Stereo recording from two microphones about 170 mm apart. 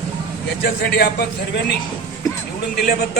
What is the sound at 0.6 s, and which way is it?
A man's voice, 70° left (ahead or behind).